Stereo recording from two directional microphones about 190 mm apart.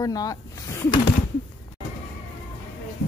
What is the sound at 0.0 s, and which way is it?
Speech, 20° left (ahead or behind).